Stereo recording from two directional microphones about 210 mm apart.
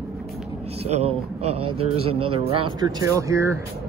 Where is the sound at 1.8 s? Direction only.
30° right (ahead or behind).